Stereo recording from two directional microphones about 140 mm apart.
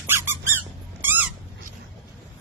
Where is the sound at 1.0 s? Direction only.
10° right (ahead or behind).